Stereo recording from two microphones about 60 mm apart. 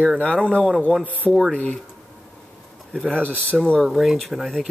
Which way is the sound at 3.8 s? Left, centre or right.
Centre.